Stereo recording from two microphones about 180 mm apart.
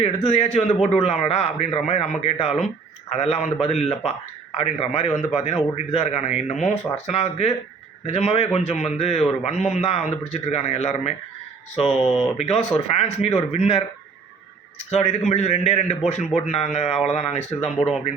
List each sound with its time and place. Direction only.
0.0 s a man's voice: 35° left (ahead or behind)
14.8 s a man's voice: 40° left (ahead or behind)